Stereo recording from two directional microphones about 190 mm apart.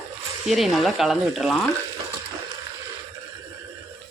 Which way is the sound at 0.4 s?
Centre (ahead or behind).